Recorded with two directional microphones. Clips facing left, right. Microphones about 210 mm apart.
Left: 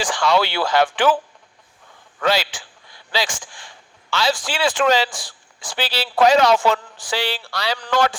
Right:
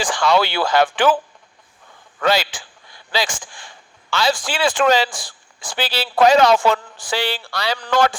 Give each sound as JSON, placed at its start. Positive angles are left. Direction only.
{"t": 0.0, "sound": "speech", "side_deg": -50}
{"t": 2.2, "sound": "speech", "side_deg": -50}